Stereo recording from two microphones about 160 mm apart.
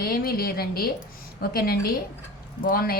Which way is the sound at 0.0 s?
70° left (ahead or behind).